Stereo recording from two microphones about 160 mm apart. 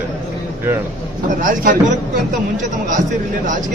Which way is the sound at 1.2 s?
55° right (ahead or behind).